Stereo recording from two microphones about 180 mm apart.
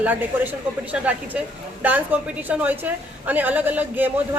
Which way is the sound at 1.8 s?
10° right (ahead or behind).